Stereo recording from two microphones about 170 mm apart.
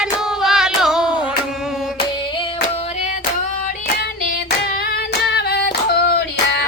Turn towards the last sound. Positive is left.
turn(degrees=75)  # may be behind; listen again after turning